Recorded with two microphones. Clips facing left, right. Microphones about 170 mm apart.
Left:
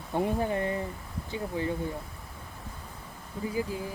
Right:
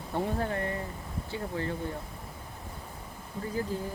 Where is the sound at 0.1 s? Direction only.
15° left (ahead or behind).